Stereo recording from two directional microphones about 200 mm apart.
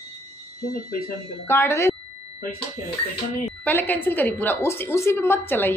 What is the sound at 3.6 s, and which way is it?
A woman's voice, 10° left (ahead or behind).